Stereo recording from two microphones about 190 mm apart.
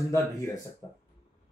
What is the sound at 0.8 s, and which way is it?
Speech, 15° left (ahead or behind).